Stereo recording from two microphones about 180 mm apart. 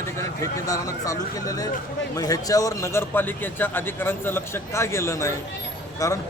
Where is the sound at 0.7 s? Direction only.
20° left (ahead or behind).